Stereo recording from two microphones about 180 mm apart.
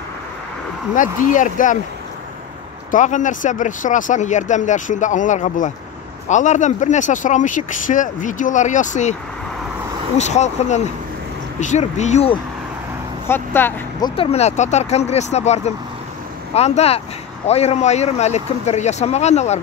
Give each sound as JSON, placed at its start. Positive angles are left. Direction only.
{"t": 0.9, "sound": "speech", "side_deg": 45}
{"t": 2.9, "sound": "speech", "side_deg": 45}
{"t": 10.1, "sound": "speech", "side_deg": 40}
{"t": 13.3, "sound": "speech", "side_deg": 10}
{"t": 14.0, "sound": "speech", "side_deg": 30}